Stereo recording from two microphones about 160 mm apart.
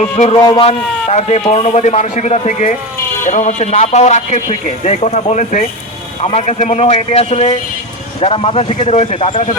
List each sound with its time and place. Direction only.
0.0 s a man's voice: 45° left (ahead or behind)
0.3 s a man's voice: 25° left (ahead or behind)
0.7 s a man's voice: 45° left (ahead or behind)